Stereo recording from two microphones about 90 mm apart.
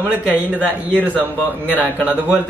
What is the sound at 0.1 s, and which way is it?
Speech, 20° right (ahead or behind).